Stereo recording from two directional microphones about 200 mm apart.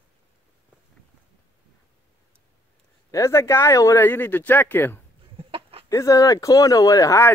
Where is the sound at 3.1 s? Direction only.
15° left (ahead or behind).